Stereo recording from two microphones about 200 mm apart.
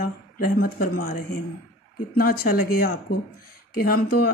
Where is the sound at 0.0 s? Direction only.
45° left (ahead or behind).